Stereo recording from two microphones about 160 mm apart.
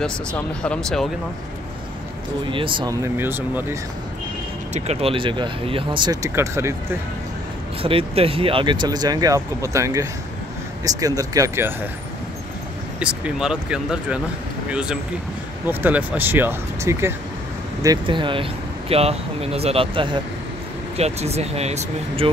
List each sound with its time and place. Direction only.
0.0 s speech: 5° left (ahead or behind)
2.5 s speech: 30° right (ahead or behind); by 3.7 s 15° right (ahead or behind)
4.7 s speech: 40° right (ahead or behind)
6.3 s speech: 15° right (ahead or behind)
7.8 s speech: 35° right (ahead or behind); by 11.7 s 20° right (ahead or behind)
13.0 s speech: 5° right (ahead or behind)
17.8 s speech: 30° right (ahead or behind)